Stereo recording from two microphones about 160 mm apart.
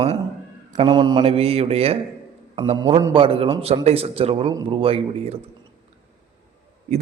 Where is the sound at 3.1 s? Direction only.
35° right (ahead or behind).